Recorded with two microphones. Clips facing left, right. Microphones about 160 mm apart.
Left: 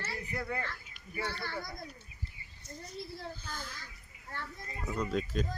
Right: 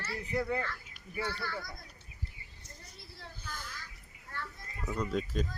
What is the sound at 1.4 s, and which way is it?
Speech, 20° left (ahead or behind).